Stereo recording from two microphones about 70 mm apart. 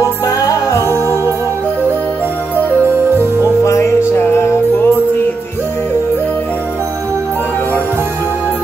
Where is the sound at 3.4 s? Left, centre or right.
Left.